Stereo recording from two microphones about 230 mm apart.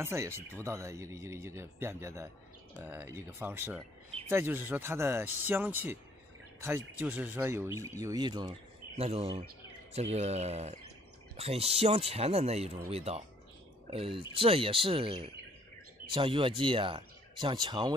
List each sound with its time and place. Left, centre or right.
0.0 s speech: centre